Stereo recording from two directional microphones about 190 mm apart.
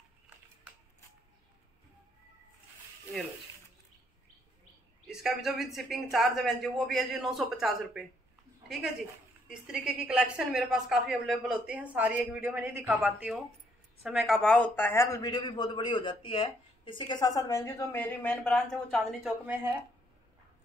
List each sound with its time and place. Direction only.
5.0 s a woman's voice: centre (ahead or behind)